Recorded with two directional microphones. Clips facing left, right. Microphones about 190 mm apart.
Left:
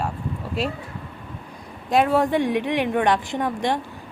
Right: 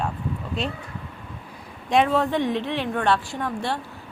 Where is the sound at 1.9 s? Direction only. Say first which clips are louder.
Left 1 dB; 5° left (ahead or behind).